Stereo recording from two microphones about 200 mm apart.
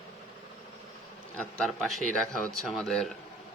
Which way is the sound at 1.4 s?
5° left (ahead or behind).